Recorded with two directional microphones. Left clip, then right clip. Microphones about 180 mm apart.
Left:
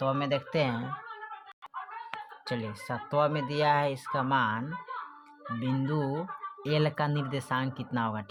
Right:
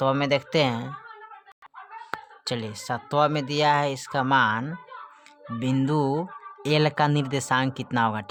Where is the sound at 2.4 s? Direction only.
35° right (ahead or behind).